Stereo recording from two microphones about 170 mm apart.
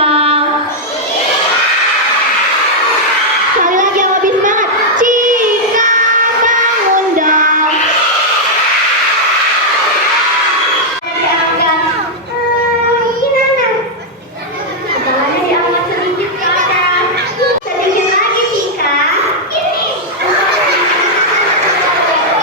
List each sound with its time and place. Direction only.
0.0 s train: 35° right (ahead or behind)
3.6 s child singing: 50° right (ahead or behind)
7.2 s music: 50° right (ahead or behind)